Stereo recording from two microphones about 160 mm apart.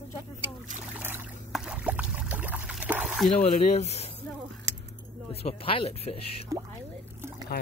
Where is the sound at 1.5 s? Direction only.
5° right (ahead or behind).